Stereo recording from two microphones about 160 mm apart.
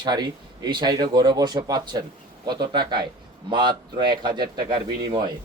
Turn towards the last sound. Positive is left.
turn(degrees=-30)  # may be behind; listen again after turning